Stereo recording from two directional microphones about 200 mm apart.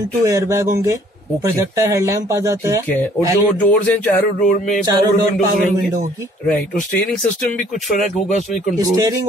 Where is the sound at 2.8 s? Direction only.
10° left (ahead or behind).